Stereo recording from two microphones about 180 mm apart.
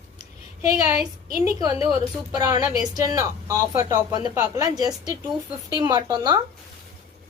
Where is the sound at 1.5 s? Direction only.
20° right (ahead or behind).